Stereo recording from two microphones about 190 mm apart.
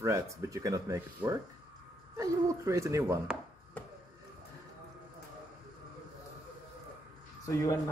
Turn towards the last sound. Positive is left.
turn(degrees=15)  # may be behind; listen again after turning